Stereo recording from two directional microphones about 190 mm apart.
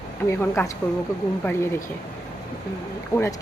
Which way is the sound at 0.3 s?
15° left (ahead or behind).